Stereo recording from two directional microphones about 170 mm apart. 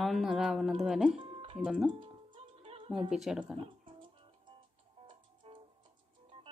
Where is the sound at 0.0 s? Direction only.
Centre (ahead or behind).